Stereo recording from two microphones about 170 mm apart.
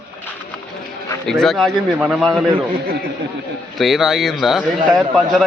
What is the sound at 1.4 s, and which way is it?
A man's voice, centre (ahead or behind).